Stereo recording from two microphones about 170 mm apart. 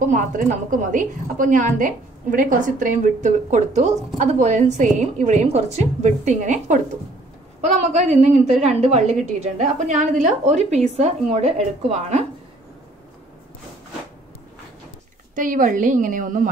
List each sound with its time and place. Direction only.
0.1 s a woman's voice: 50° right (ahead or behind)
8.2 s a woman's voice: 45° right (ahead or behind)
15.3 s a woman's voice: 50° right (ahead or behind)